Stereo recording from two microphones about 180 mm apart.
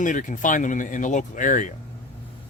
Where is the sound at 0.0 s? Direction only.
45° left (ahead or behind).